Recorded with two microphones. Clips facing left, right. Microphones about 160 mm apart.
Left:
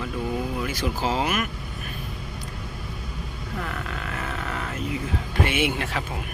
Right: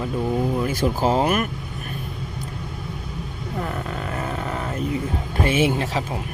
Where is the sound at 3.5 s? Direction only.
30° right (ahead or behind).